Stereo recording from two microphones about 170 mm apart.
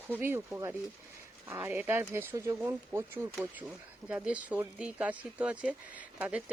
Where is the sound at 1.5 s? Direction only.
15° right (ahead or behind).